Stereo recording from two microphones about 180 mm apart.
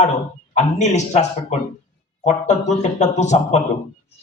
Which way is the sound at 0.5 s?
40° left (ahead or behind).